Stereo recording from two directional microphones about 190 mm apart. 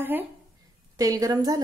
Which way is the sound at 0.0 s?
10° right (ahead or behind).